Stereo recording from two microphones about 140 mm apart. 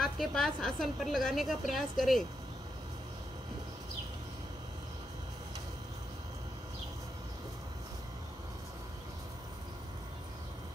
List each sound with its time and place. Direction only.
0.0 s a woman's voice: centre (ahead or behind)